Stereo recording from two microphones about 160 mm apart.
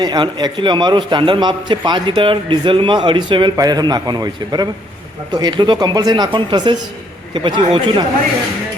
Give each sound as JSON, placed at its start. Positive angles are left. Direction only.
{"t": 0.0, "sound": "a man's voice", "side_deg": -25}